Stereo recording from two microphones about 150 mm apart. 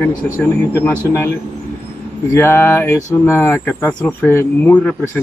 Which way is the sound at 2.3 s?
15° left (ahead or behind).